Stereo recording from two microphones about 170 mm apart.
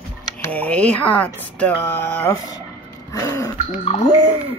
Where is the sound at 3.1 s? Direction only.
20° left (ahead or behind).